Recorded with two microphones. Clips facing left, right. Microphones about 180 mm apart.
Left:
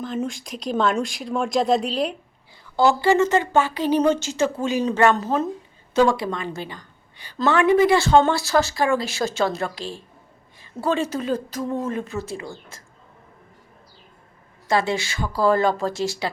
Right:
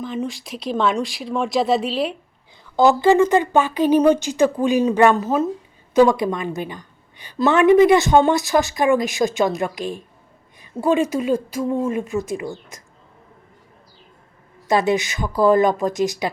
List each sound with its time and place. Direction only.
0.0 s speech: centre (ahead or behind)
2.7 s a woman's voice: 15° right (ahead or behind)
14.7 s a woman's voice: 20° right (ahead or behind)